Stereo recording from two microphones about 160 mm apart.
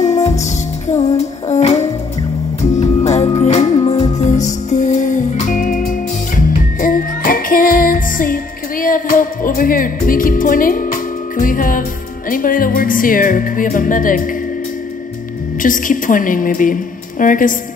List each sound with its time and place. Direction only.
0.0 s music: 45° left (ahead or behind)
15.6 s music: 55° left (ahead or behind)